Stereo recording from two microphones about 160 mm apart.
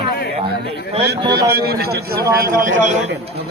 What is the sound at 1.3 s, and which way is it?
A man's voice, 80° right.